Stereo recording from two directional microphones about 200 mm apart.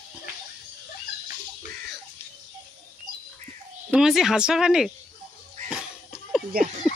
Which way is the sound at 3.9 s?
Centre (ahead or behind).